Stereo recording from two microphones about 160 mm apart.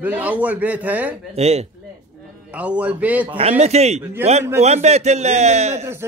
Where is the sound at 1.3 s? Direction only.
40° right (ahead or behind).